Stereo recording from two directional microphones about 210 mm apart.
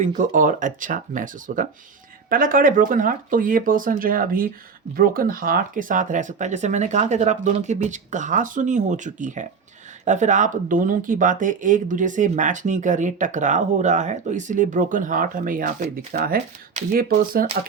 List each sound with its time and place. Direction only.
0.0 s speech: 40° right (ahead or behind)